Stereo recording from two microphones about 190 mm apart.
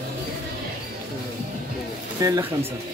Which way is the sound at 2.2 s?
20° right (ahead or behind).